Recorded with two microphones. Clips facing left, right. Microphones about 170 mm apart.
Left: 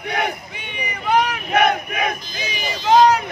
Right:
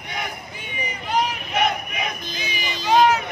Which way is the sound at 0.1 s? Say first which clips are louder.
Left 7 dB; 70° left (ahead or behind).